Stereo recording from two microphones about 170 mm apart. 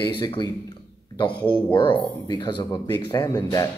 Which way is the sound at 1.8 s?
30° left (ahead or behind).